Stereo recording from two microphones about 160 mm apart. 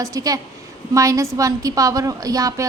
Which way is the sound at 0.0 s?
20° right (ahead or behind).